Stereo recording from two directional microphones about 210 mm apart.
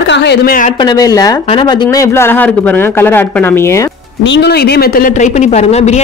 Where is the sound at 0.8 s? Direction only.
15° left (ahead or behind).